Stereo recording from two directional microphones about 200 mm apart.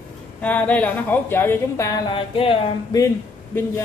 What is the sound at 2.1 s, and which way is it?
Speech, 25° left (ahead or behind).